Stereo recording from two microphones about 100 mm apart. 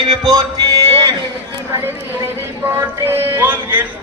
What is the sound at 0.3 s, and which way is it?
Music, 40° right (ahead or behind).